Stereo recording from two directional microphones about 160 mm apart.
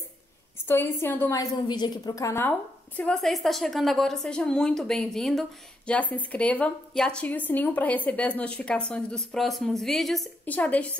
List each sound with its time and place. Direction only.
0.7 s a woman's voice: 15° left (ahead or behind)
1.4 s a woman's voice: 25° left (ahead or behind)
3.0 s a woman's voice: 5° left (ahead or behind)